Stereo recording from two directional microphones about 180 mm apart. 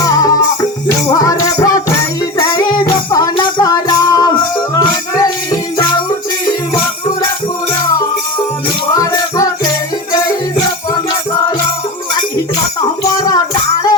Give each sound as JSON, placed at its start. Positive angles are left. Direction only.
{"t": 0.0, "sound": "music", "side_deg": 20}
{"t": 13.1, "sound": "music", "side_deg": 20}